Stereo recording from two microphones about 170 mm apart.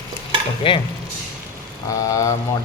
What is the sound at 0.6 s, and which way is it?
Speech, 30° left (ahead or behind).